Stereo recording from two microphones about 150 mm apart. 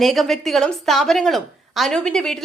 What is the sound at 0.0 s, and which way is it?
A woman's voice, centre (ahead or behind).